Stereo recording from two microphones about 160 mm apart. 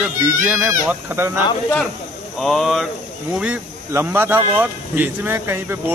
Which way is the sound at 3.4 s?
10° right (ahead or behind).